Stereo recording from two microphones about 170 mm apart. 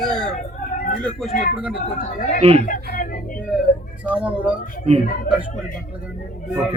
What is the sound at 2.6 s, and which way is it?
Speech, 55° left (ahead or behind).